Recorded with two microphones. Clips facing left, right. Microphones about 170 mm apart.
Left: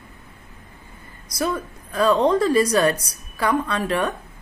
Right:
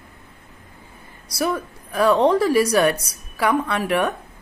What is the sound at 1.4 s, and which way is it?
Speech, 10° right (ahead or behind).